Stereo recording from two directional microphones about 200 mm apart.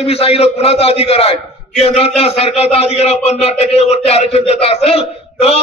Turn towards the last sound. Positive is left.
turn(degrees=30)  # may be behind; listen again after turning